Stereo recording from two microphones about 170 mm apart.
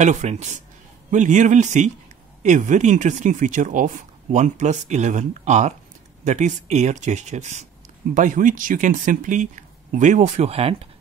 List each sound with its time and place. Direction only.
0.0 s speech: 45° right (ahead or behind)